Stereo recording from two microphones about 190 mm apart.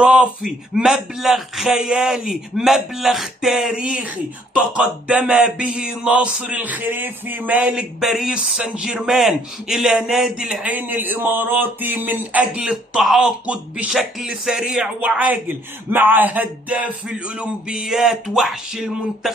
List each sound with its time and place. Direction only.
0.0 s speech: 5° right (ahead or behind)